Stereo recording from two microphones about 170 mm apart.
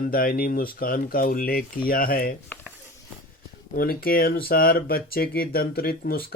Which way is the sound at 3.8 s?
60° left (ahead or behind).